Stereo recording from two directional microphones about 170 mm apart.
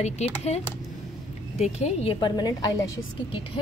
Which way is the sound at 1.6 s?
40° left (ahead or behind).